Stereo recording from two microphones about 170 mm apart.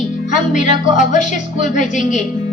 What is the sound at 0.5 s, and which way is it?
A woman's voice, 45° left (ahead or behind).